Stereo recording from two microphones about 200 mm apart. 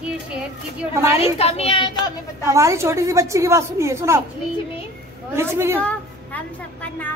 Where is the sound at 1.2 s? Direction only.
30° left (ahead or behind).